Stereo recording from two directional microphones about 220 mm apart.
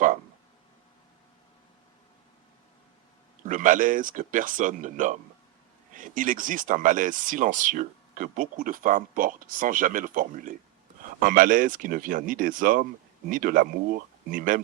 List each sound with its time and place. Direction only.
3.4 s speech: 35° right (ahead or behind)